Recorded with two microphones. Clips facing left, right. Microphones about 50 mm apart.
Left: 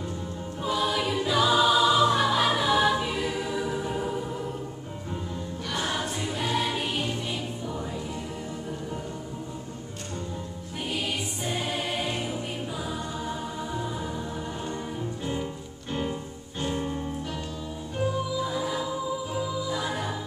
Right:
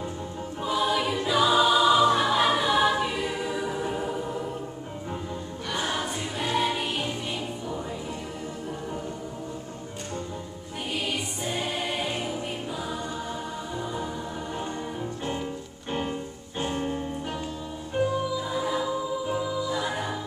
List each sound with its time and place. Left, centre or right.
0.6 s choir: centre
5.7 s music: centre
10.9 s music: centre
16.5 s music: right
18.4 s music: centre